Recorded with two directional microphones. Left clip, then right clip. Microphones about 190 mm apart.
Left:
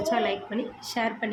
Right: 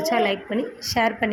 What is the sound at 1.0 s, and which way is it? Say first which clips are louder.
Speech: right 7 dB; 35° right (ahead or behind).